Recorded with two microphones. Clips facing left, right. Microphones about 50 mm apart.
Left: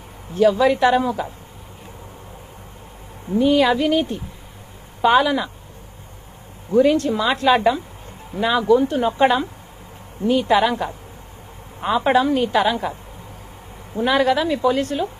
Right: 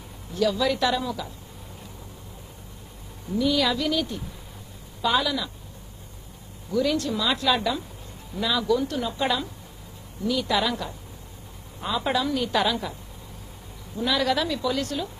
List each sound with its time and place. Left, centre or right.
0.3 s a woman's voice: left
3.3 s a woman's voice: left
6.7 s a woman's voice: left
13.9 s a woman's voice: left